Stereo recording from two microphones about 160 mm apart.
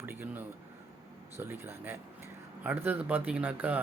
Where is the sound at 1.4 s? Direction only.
15° right (ahead or behind).